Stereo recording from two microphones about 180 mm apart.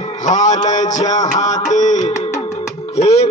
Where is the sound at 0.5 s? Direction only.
20° left (ahead or behind).